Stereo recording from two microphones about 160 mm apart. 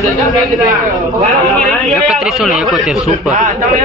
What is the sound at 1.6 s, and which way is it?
A man's voice, centre (ahead or behind).